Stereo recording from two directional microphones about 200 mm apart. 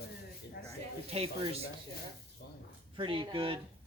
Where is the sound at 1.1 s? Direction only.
30° right (ahead or behind).